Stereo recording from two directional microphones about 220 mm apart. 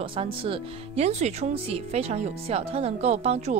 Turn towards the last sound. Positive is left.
turn(degrees=-30)  # may be behind; listen again after turning